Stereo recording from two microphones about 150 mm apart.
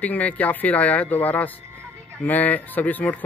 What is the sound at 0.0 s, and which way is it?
Speech, 10° left (ahead or behind).